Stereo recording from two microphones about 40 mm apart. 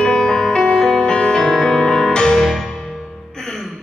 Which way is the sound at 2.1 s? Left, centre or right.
Centre.